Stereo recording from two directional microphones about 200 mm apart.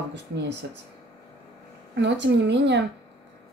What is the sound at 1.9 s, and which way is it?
Speech, 60° right (ahead or behind).